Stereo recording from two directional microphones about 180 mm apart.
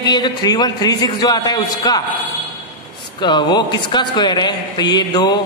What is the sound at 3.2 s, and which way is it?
A man's voice, 25° left (ahead or behind).